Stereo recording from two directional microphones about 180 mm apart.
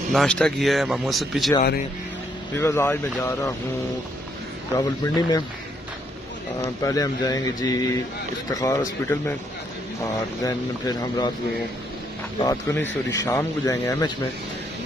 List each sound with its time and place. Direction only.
0.1 s speech: 5° left (ahead or behind)
2.5 s speech: 10° left (ahead or behind)
4.7 s speech: 20° left (ahead or behind)
6.6 s speech: 15° left (ahead or behind)
10.4 s speech: 20° left (ahead or behind)
12.4 s speech: 20° left (ahead or behind)